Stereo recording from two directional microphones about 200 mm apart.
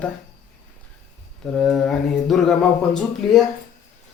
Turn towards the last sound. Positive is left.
turn(degrees=5)  # may be behind; listen again after turning